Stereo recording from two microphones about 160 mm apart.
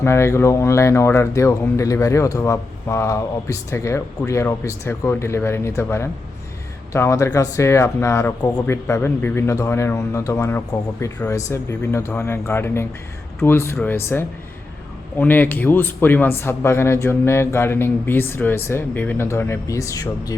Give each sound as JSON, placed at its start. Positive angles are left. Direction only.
{"t": 0.0, "sound": "speech", "side_deg": 15}